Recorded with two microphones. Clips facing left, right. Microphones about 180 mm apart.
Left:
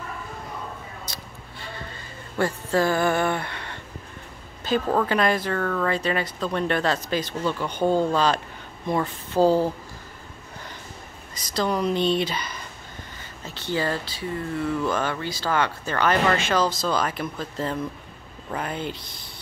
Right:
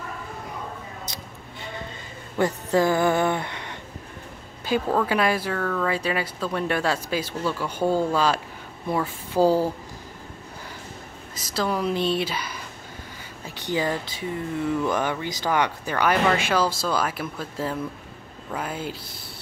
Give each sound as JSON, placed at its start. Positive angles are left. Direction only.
{"t": 1.0, "sound": "a sound", "side_deg": -20}
{"t": 2.3, "sound": "speech", "side_deg": -20}
{"t": 11.3, "sound": "speech", "side_deg": -5}